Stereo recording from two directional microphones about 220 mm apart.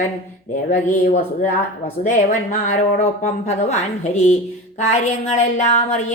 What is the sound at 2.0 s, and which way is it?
A woman's voice, 35° left (ahead or behind).